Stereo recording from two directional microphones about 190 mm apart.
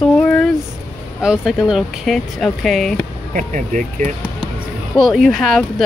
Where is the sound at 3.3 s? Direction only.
40° right (ahead or behind).